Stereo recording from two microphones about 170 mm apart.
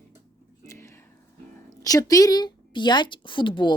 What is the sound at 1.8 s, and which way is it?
A woman's voice, 20° left (ahead or behind).